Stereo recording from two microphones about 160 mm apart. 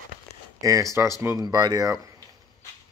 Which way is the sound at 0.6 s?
20° right (ahead or behind).